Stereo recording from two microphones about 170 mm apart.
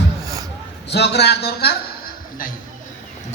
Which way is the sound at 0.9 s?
75° left (ahead or behind).